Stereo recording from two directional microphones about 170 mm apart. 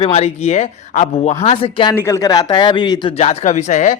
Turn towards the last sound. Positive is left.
turn(degrees=45)  # may be behind; listen again after turning